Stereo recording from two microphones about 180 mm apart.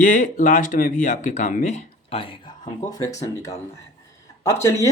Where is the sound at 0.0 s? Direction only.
45° left (ahead or behind); by 2.7 s 30° left (ahead or behind).